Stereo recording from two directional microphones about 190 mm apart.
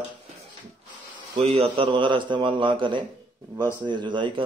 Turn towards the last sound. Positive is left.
turn(degrees=-25)  # may be behind; listen again after turning